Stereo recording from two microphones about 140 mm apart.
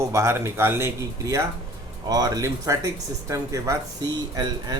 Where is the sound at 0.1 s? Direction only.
20° right (ahead or behind).